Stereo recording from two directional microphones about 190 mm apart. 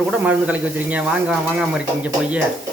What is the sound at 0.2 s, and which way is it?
Speech, 10° right (ahead or behind).